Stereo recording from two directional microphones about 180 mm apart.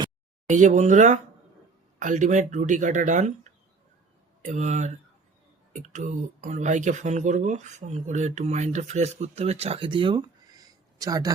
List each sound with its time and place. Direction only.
0.4 s speech: 40° right (ahead or behind); by 11.3 s 20° right (ahead or behind)